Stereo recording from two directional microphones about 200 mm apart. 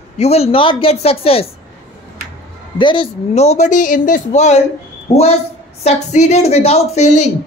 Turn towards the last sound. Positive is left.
turn(degrees=35)  # may be behind; listen again after turning